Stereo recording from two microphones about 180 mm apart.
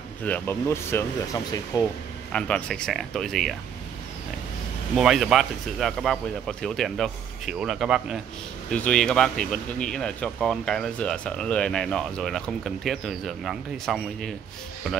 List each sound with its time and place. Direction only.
0.2 s speech: 10° left (ahead or behind)
2.3 s speech: 5° left (ahead or behind)
4.9 s speech: centre (ahead or behind)